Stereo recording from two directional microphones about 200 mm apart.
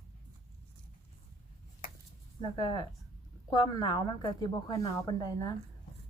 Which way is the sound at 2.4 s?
20° left (ahead or behind).